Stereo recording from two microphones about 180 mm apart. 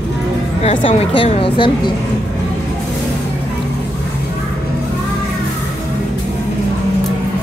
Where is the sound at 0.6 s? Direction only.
30° left (ahead or behind).